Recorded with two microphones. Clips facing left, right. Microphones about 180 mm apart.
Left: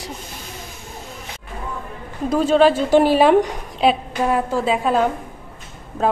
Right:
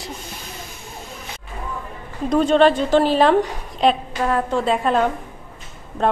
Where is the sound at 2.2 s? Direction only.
5° left (ahead or behind).